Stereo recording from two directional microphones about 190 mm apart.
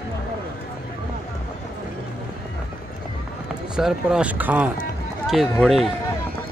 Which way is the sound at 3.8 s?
5° right (ahead or behind).